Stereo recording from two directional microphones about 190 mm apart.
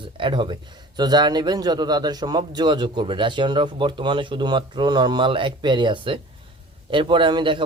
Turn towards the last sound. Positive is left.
turn(degrees=-25)  # may be behind; listen again after turning